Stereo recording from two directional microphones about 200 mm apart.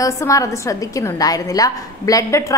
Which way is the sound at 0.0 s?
15° left (ahead or behind).